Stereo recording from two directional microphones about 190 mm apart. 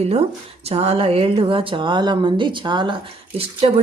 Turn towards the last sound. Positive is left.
turn(degrees=-35)  # may be behind; listen again after turning